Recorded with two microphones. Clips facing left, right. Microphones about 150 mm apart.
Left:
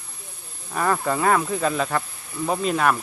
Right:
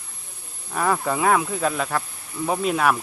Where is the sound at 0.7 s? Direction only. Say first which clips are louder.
Even; centre (ahead or behind).